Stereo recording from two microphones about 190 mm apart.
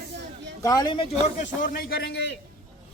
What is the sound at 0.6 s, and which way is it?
Speech, 20° left (ahead or behind).